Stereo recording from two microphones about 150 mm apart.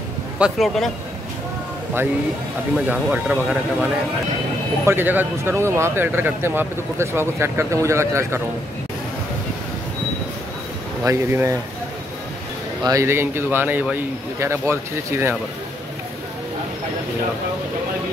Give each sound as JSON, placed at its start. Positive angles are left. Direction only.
{"t": 0.4, "sound": "speech", "side_deg": 0}
{"t": 2.9, "sound": "speech", "side_deg": -5}
{"t": 11.1, "sound": "speech", "side_deg": -20}
{"t": 12.8, "sound": "speech", "side_deg": -20}